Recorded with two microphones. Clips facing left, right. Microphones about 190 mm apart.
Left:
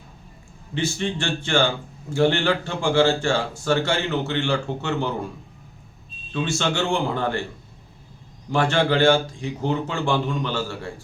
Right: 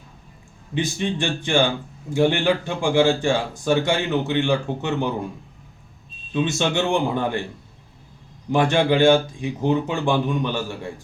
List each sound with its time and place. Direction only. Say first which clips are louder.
0.7 s a man's voice: right 1 dB; 15° right (ahead or behind)
6.3 s a man's voice: right 3 dB; 20° right (ahead or behind)
8.5 s a man's voice: right 2 dB; 15° right (ahead or behind)